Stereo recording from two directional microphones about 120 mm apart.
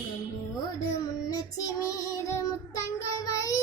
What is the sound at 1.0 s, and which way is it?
Child singing, 30° left (ahead or behind).